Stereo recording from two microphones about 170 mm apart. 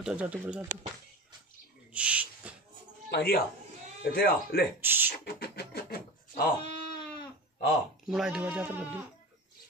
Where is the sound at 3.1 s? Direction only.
65° left (ahead or behind).